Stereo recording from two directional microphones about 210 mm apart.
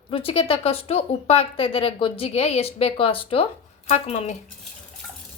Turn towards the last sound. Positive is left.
turn(degrees=30)  # may be behind; listen again after turning